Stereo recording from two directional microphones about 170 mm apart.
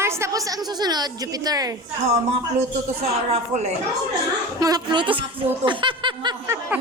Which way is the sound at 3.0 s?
35° right (ahead or behind).